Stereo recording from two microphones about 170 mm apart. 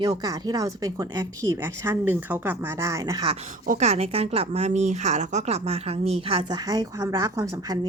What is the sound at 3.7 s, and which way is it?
Speech, 40° right (ahead or behind).